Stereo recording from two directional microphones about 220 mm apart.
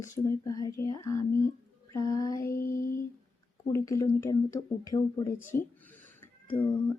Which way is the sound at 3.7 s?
15° left (ahead or behind).